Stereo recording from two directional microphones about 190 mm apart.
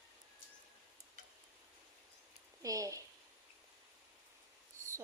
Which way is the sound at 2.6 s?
15° right (ahead or behind).